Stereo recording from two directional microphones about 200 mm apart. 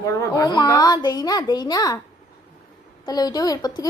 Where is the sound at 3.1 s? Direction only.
20° left (ahead or behind).